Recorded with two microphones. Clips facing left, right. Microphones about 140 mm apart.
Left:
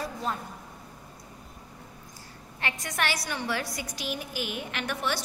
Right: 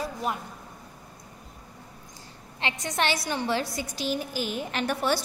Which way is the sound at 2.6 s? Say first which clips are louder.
Right 3 dB; 20° right (ahead or behind).